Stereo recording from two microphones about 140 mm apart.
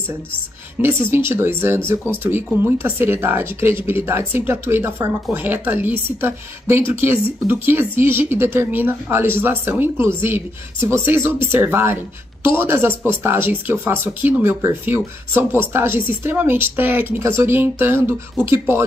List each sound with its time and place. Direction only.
0.7 s speech: 15° right (ahead or behind)